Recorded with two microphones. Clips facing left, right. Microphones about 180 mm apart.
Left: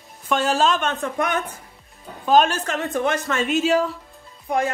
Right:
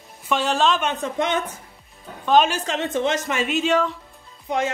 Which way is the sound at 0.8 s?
15° right (ahead or behind).